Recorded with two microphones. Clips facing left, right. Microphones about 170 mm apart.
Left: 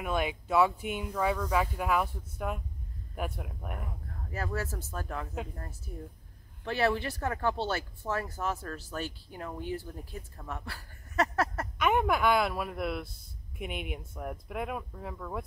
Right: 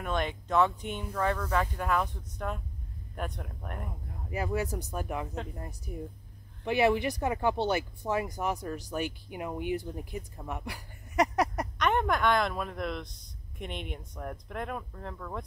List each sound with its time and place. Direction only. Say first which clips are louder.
0.0 s speech: left 1 dB; 5° left (ahead or behind)
4.3 s speech: right 4 dB; 15° right (ahead or behind)
11.8 s speech: left 1 dB; 5° left (ahead or behind)